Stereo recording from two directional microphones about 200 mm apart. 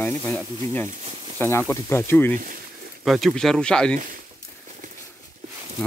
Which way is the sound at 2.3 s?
45° right (ahead or behind).